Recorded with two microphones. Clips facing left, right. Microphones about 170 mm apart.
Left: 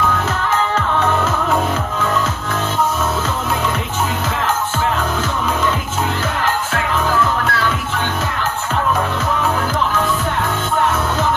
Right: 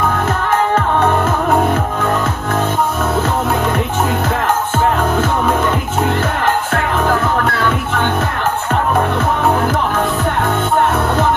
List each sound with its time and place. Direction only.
0.5 s music: 55° right (ahead or behind)
6.4 s music: 55° right (ahead or behind)